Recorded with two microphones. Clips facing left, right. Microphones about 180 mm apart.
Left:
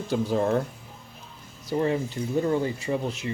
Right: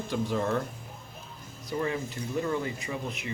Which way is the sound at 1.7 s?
30° left (ahead or behind).